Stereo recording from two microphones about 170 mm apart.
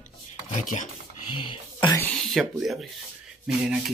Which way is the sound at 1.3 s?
30° left (ahead or behind).